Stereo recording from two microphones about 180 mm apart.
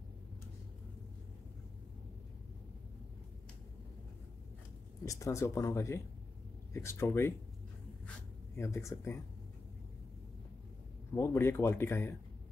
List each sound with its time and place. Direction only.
5.0 s speech: 15° left (ahead or behind)
8.5 s speech: 15° left (ahead or behind)
11.1 s speech: 15° left (ahead or behind)